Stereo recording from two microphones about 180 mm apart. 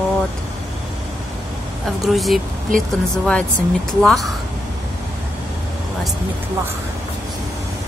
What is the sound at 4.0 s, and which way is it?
Speech, centre (ahead or behind).